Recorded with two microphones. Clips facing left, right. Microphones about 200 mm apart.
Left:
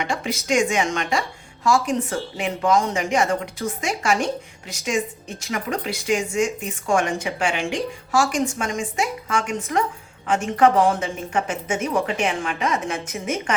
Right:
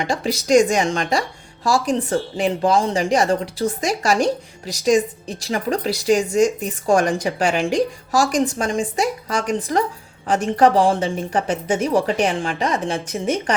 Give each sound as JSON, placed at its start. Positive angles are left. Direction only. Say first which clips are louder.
{"t": 0.0, "sound": "speech", "louder": "right 4 dB", "side_deg": -35}